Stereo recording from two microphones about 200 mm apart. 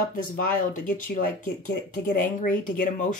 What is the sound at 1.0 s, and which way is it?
Speech, 40° left (ahead or behind).